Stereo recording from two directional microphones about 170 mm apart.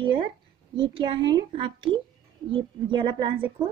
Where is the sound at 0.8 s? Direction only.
30° right (ahead or behind).